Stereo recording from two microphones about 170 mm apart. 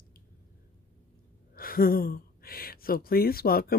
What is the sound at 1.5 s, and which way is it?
Speech, 60° left (ahead or behind).